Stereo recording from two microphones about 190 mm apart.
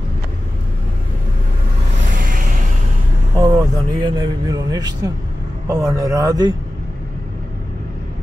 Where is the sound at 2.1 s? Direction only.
45° right (ahead or behind).